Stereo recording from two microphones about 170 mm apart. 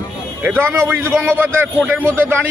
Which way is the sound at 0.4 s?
15° right (ahead or behind).